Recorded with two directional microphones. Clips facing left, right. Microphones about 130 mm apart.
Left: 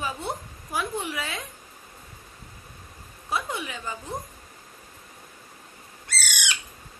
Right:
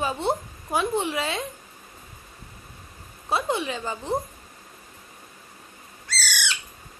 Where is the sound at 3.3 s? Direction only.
30° right (ahead or behind).